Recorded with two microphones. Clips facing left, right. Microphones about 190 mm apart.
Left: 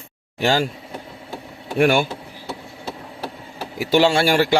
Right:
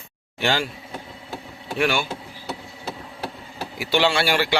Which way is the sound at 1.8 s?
50° left (ahead or behind).